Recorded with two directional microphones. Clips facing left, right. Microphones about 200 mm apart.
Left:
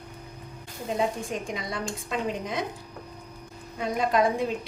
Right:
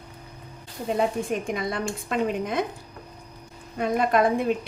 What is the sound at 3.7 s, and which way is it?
Speech, 55° right (ahead or behind).